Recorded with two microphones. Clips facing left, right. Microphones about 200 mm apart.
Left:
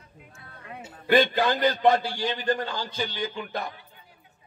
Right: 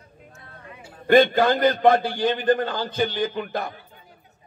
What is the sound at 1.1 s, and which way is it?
A man's voice, 50° right (ahead or behind).